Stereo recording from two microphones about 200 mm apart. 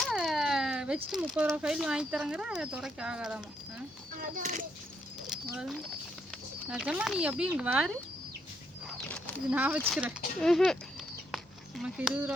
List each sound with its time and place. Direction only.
0.0 s speech: centre (ahead or behind)
4.2 s a child's voice: 40° right (ahead or behind)
5.3 s speech: 5° right (ahead or behind)
8.9 s a sound: 5° left (ahead or behind)
9.5 s speech: 10° right (ahead or behind)
11.8 s speech: 5° right (ahead or behind)